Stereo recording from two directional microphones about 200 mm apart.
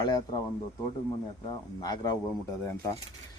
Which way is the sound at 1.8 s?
20° left (ahead or behind).